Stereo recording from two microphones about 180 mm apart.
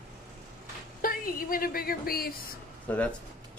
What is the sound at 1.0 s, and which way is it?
A woman's voice, 50° left (ahead or behind).